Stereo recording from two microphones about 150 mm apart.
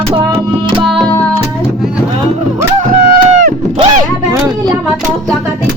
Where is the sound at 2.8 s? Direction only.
60° right (ahead or behind).